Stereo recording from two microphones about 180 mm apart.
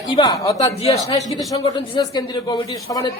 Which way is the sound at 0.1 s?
20° left (ahead or behind).